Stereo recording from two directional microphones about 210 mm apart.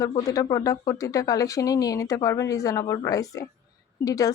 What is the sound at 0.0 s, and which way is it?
A woman's voice, 15° left (ahead or behind).